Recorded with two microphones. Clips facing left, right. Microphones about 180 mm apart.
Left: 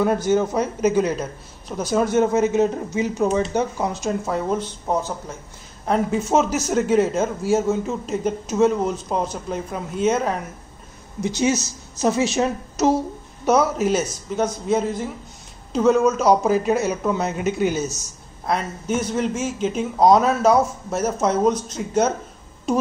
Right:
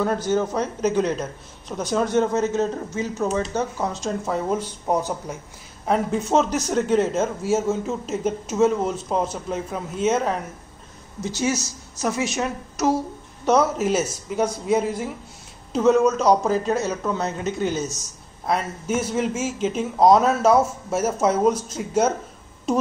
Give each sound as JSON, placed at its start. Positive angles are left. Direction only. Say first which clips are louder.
{"t": 0.0, "sound": "speech", "louder": "left 3 dB", "side_deg": 10}
{"t": 4.9, "sound": "a man's voice", "louder": "right 1 dB", "side_deg": -15}
{"t": 5.9, "sound": "speech", "louder": "left 1 dB", "side_deg": 0}
{"t": 11.1, "sound": "speech", "louder": "left 4 dB", "side_deg": 15}
{"t": 12.0, "sound": "a woman's voice", "louder": "left 5 dB", "side_deg": 30}
{"t": 13.5, "sound": "a man's voice", "louder": "left 1 dB", "side_deg": 0}
{"t": 18.4, "sound": "speech", "louder": "even", "side_deg": -5}